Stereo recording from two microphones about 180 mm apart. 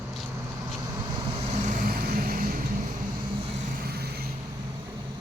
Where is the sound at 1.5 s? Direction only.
50° right (ahead or behind).